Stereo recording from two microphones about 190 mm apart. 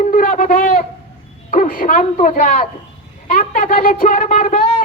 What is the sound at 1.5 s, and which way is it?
A woman's voice, 45° left (ahead or behind).